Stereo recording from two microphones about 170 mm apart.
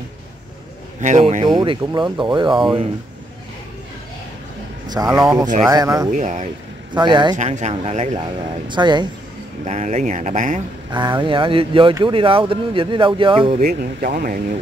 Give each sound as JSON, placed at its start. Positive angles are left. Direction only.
{"t": 1.0, "sound": "speech", "side_deg": -45}
{"t": 1.5, "sound": "speech", "side_deg": -25}
{"t": 5.0, "sound": "speech", "side_deg": 0}
{"t": 5.7, "sound": "speech", "side_deg": -20}
{"t": 6.1, "sound": "speech", "side_deg": -45}
{"t": 6.9, "sound": "speech", "side_deg": -25}
{"t": 7.3, "sound": "speech", "side_deg": -45}
{"t": 8.6, "sound": "speech", "side_deg": -25}
{"t": 9.7, "sound": "speech", "side_deg": -45}
{"t": 10.9, "sound": "speech", "side_deg": -25}
{"t": 13.6, "sound": "speech", "side_deg": -55}